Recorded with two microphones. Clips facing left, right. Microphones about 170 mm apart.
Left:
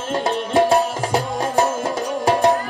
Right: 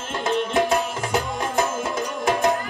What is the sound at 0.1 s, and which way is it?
Music, 35° left (ahead or behind).